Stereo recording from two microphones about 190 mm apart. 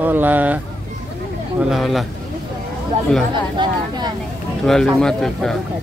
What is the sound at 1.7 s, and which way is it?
Speech, centre (ahead or behind).